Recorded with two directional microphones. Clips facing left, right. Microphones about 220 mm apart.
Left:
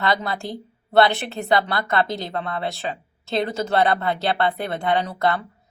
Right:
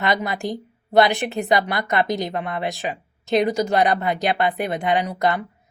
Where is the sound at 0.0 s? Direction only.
15° right (ahead or behind).